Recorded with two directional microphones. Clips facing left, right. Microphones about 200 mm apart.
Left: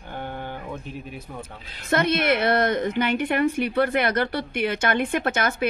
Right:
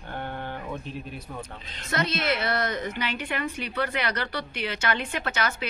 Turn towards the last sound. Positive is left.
turn(degrees=50)  # may be behind; listen again after turning